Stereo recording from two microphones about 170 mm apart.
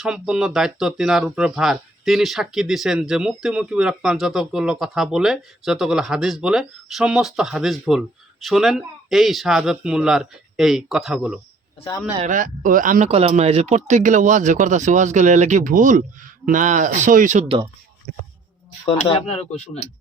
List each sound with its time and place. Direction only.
0.0 s speech: 5° right (ahead or behind)
12.2 s speech: 50° right (ahead or behind)
18.9 s speech: 30° left (ahead or behind)